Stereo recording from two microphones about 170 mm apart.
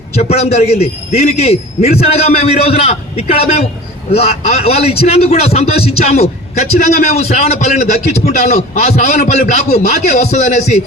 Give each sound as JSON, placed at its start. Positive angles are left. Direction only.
{"t": 0.1, "sound": "a man's voice", "side_deg": 40}